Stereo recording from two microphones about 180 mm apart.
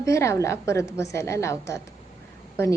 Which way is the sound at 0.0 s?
15° left (ahead or behind).